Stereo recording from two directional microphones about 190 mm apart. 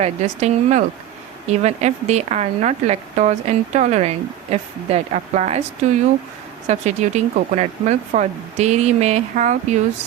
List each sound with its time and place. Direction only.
0.0 s speech: 35° right (ahead or behind)
6.7 s speech: 35° right (ahead or behind)